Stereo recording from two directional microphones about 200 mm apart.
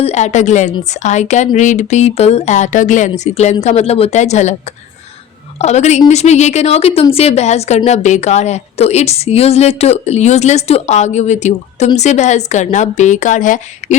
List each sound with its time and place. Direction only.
0.0 s a woman's voice: 35° left (ahead or behind)
5.5 s a woman's voice: 35° left (ahead or behind)